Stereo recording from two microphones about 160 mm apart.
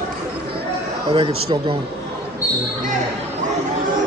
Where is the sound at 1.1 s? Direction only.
35° right (ahead or behind).